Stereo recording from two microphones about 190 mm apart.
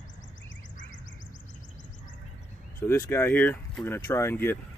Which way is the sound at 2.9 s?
15° left (ahead or behind).